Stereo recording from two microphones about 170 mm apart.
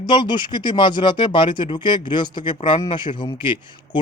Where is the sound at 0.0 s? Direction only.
25° left (ahead or behind).